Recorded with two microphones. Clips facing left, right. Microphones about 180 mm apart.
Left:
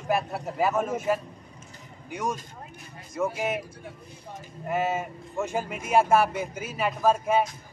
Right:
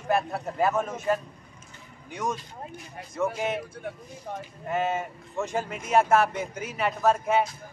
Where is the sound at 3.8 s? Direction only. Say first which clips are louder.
Right 7 dB; 60° right (ahead or behind).